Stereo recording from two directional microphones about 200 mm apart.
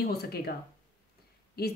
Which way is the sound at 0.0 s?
50° left (ahead or behind).